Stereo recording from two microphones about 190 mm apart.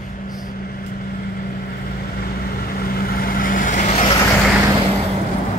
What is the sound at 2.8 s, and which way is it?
Vehicle, 50° left (ahead or behind).